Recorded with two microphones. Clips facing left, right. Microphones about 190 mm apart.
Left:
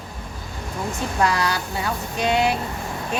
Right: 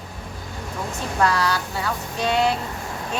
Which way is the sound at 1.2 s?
15° left (ahead or behind).